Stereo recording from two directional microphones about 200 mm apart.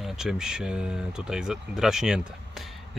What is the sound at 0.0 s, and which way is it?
Speech, 5° right (ahead or behind).